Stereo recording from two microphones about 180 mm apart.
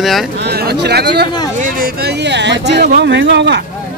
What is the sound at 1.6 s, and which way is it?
Speech, 50° right (ahead or behind).